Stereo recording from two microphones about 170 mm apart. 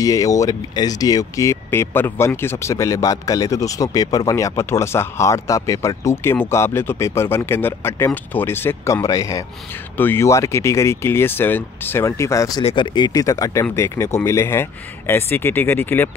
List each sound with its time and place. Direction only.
0.0 s speech: 20° left (ahead or behind)